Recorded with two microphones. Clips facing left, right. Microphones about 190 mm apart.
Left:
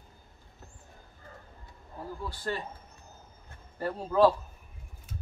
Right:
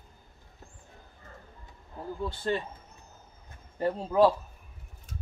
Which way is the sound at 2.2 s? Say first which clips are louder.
Right 5 dB; 25° right (ahead or behind).